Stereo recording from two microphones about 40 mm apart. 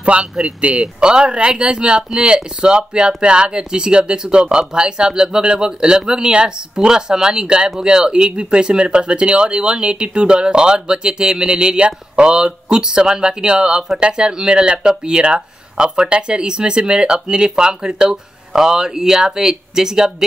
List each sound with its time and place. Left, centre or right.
0.0 s a man's voice: right; by 20.2 s centre